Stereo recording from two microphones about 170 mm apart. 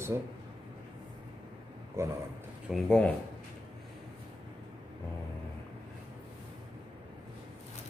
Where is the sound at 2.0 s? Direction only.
15° right (ahead or behind).